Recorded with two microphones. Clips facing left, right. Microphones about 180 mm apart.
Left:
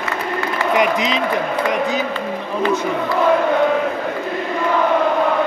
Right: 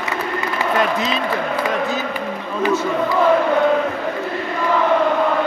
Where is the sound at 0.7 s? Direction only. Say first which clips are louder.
Left 3 dB; 15° left (ahead or behind).